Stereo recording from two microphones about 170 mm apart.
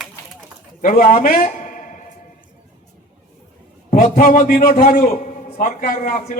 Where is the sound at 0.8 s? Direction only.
55° left (ahead or behind).